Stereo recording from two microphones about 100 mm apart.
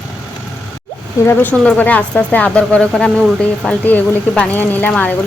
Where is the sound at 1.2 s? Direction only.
20° left (ahead or behind).